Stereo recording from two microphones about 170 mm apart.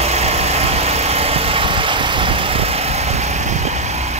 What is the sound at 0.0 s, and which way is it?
Vehicle, 40° right (ahead or behind).